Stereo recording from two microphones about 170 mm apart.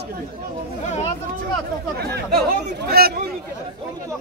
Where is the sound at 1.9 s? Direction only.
70° right (ahead or behind).